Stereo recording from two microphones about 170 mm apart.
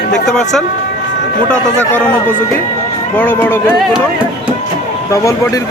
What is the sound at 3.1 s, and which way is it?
Speech, 10° left (ahead or behind).